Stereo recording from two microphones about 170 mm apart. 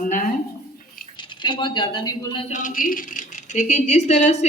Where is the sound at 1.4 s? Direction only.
30° left (ahead or behind).